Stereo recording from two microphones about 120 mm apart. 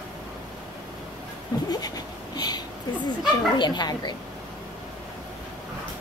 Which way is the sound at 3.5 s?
40° left (ahead or behind).